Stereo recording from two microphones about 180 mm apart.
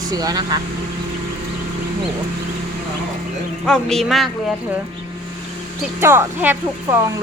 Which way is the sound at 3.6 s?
5° left (ahead or behind).